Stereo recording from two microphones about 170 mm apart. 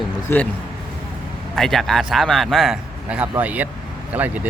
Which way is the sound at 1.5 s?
Centre (ahead or behind).